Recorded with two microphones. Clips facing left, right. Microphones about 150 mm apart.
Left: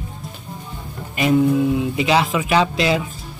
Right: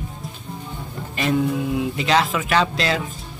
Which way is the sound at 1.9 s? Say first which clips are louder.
Left 2 dB; 10° left (ahead or behind).